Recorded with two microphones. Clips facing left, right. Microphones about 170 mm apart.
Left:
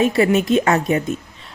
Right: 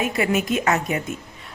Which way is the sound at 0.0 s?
30° left (ahead or behind).